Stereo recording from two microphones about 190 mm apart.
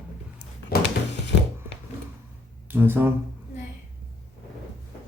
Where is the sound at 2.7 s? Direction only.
10° right (ahead or behind).